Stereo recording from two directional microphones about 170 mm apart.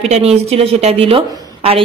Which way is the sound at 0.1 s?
40° right (ahead or behind).